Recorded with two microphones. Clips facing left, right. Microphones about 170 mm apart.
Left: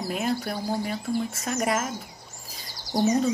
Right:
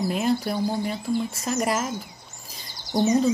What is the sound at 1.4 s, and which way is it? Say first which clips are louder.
Speech: right 1 dB; centre (ahead or behind).